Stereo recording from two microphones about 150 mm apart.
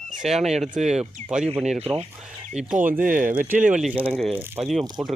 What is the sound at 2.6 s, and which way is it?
Speech, 5° right (ahead or behind).